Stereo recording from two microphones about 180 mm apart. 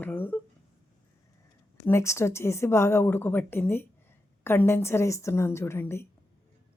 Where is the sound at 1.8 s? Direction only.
15° left (ahead or behind).